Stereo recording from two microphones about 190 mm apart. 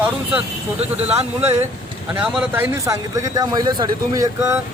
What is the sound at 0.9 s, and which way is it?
Speech, 35° right (ahead or behind).